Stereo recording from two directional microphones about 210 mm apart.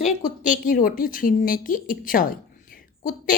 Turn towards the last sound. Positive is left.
turn(degrees=40)  # may be behind; listen again after turning